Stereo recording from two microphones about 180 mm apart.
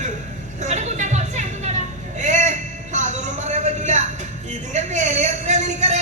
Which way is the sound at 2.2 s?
40° right (ahead or behind).